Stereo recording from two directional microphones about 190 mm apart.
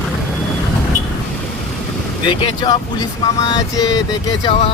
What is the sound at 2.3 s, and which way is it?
Speech, 25° left (ahead or behind).